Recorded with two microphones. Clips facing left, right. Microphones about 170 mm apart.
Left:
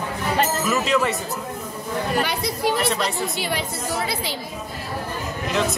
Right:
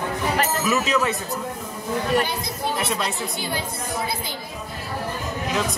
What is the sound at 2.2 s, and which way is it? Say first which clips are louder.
A woman's voice: left 4 dB; 75° left (ahead or behind).